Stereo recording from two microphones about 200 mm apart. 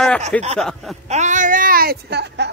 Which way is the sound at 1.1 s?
35° right (ahead or behind).